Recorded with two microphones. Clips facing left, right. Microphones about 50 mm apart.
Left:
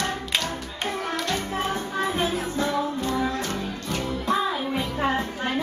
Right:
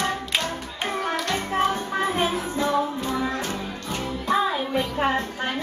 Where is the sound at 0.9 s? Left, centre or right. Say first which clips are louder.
Right 2 dB; right.